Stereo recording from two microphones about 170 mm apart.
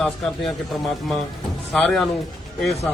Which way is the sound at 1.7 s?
5° left (ahead or behind).